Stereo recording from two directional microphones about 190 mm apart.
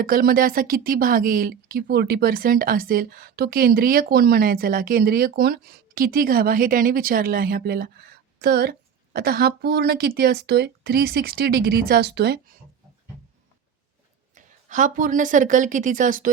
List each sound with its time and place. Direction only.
0.0 s a woman's voice: 50° right (ahead or behind)
14.3 s speech: 40° right (ahead or behind)